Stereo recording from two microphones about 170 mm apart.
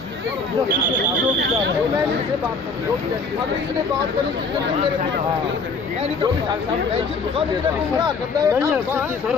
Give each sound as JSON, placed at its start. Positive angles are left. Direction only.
{"t": 8.0, "sound": "speech", "side_deg": -20}